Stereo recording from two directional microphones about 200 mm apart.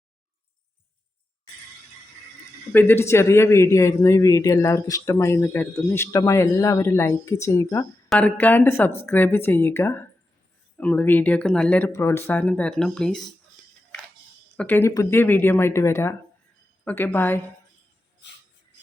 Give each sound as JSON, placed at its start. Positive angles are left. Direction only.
{"t": 2.7, "sound": "a man's voice", "side_deg": 10}
{"t": 14.5, "sound": "a man's voice", "side_deg": 10}